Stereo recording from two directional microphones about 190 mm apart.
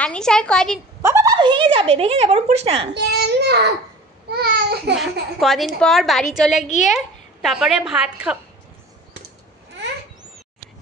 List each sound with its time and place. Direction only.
0.0 s a woman's voice: 5° left (ahead or behind)
1.0 s speech: 15° right (ahead or behind); by 2.9 s 35° right (ahead or behind)
2.9 s a child's voice: 60° right (ahead or behind)
4.3 s a sound: 60° right (ahead or behind)
5.4 s a woman's voice: centre (ahead or behind)
6.6 s a woman's voice: 40° left (ahead or behind)
7.4 s a woman's voice: centre (ahead or behind)